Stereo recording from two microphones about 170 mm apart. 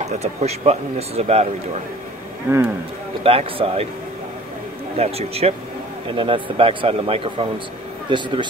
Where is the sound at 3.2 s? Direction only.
35° right (ahead or behind).